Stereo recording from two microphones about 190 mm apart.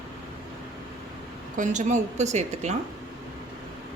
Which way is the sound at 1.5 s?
40° right (ahead or behind).